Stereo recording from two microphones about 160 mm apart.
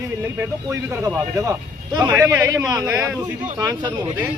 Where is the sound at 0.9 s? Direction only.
20° right (ahead or behind).